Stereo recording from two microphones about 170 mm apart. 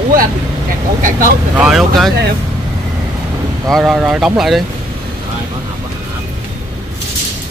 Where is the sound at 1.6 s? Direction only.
Centre (ahead or behind).